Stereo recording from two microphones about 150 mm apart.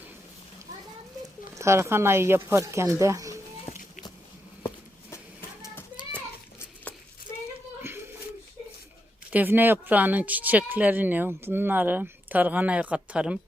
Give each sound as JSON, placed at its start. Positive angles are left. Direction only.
{"t": 1.5, "sound": "speech", "side_deg": -20}
{"t": 6.1, "sound": "children playing", "side_deg": 10}
{"t": 7.8, "sound": "a sound", "side_deg": -15}
{"t": 9.3, "sound": "speech", "side_deg": -10}